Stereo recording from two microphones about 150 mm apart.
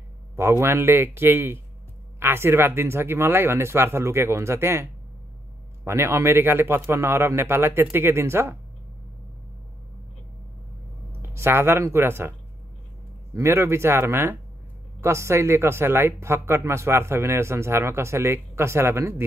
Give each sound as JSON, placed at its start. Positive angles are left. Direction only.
{"t": 0.4, "sound": "speech", "side_deg": -15}
{"t": 5.9, "sound": "speech", "side_deg": -15}
{"t": 11.2, "sound": "speech", "side_deg": -15}